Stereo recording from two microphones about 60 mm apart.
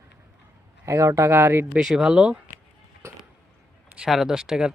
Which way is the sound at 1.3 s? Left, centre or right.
Right.